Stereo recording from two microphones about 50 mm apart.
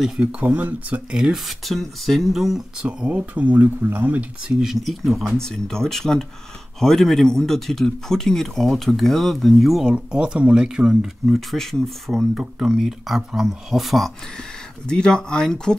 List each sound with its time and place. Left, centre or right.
0.4 s speech: right
1.1 s speech: centre
1.6 s speech: centre
3.1 s speech: right
4.5 s speech: centre
5.4 s speech: centre
9.9 s speech: centre
11.3 s speech: centre
12.4 s speech: centre
14.9 s speech: centre